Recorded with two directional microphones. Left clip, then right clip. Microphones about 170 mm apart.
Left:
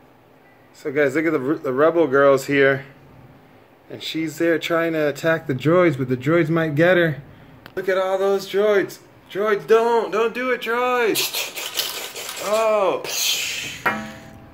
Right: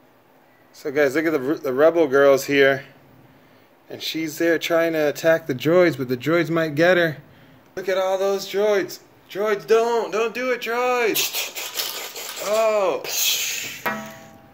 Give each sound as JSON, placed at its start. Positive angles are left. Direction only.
{"t": 0.8, "sound": "speech", "side_deg": -15}
{"t": 3.9, "sound": "speech", "side_deg": -15}
{"t": 7.7, "sound": "speech", "side_deg": 0}
{"t": 11.1, "sound": "speech", "side_deg": -30}
{"t": 12.6, "sound": "speech", "side_deg": 0}
{"t": 13.0, "sound": "speech", "side_deg": -30}